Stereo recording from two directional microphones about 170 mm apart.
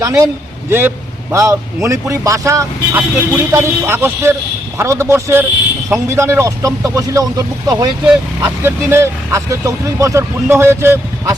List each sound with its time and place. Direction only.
0.0 s speech: 20° right (ahead or behind)